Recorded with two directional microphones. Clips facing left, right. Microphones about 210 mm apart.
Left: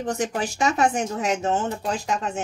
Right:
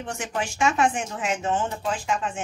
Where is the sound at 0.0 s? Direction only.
40° left (ahead or behind).